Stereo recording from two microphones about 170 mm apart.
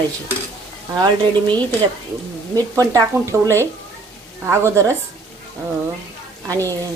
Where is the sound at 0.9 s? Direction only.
25° right (ahead or behind).